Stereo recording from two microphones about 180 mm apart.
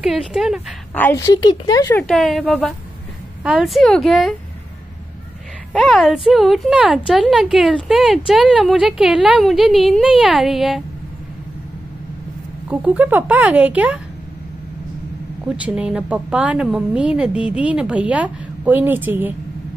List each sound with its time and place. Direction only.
0.0 s speech: centre (ahead or behind)
0.9 s a woman's voice: 15° left (ahead or behind)
1.9 s speech: 5° left (ahead or behind)
5.7 s speech: 5° left (ahead or behind)
12.6 s a woman's voice: 10° right (ahead or behind)
15.4 s a woman's voice: 5° right (ahead or behind)